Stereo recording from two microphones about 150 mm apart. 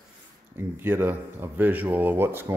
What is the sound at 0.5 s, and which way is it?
Speech, 15° right (ahead or behind).